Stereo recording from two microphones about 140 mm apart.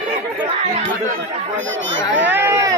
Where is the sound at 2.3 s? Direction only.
15° right (ahead or behind).